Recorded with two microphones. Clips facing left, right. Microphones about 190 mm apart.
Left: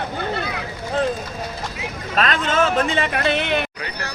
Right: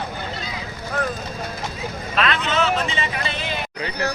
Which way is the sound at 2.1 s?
45° left (ahead or behind).